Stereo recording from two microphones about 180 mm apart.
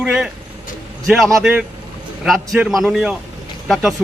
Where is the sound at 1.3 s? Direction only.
Centre (ahead or behind).